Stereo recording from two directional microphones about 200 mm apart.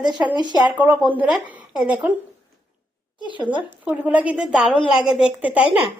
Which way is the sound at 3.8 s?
5° right (ahead or behind).